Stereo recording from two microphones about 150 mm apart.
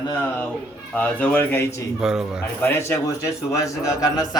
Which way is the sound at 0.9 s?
10° left (ahead or behind).